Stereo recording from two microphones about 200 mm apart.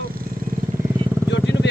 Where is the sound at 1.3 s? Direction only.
60° left (ahead or behind).